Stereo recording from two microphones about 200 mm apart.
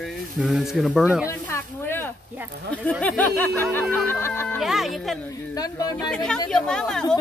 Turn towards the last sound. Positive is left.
turn(degrees=5)  # may be behind; listen again after turning